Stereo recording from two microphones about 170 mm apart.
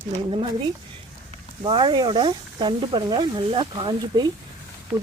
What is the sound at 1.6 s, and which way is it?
Speech, 25° right (ahead or behind).